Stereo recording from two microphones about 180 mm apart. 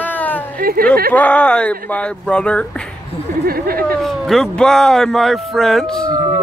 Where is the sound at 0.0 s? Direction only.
10° left (ahead or behind).